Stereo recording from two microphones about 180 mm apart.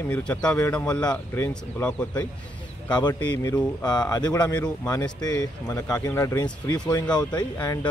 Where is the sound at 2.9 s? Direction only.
25° left (ahead or behind).